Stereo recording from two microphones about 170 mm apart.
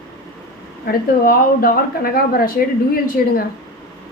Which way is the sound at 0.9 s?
60° left (ahead or behind).